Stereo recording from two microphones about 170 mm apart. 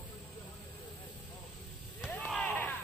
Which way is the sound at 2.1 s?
5° left (ahead or behind).